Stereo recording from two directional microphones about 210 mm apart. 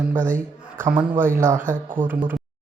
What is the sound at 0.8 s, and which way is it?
Speech, 10° right (ahead or behind).